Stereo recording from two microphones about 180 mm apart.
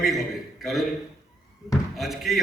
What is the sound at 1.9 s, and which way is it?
Speech, centre (ahead or behind).